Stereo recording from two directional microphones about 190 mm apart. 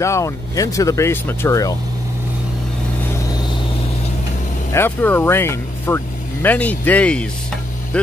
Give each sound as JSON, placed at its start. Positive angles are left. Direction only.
{"t": 0.0, "sound": "speech", "side_deg": 15}
{"t": 4.7, "sound": "speech", "side_deg": 10}